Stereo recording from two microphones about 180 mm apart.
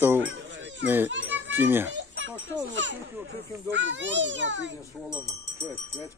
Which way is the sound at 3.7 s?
90° right.